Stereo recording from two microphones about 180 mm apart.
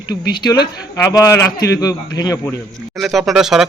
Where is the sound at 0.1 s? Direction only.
25° left (ahead or behind).